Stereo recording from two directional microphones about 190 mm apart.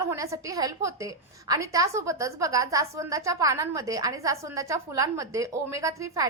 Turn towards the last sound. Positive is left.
turn(degrees=-15)  # may be behind; listen again after turning